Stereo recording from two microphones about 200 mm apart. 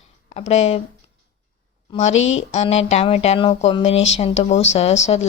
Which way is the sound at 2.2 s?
75° left (ahead or behind).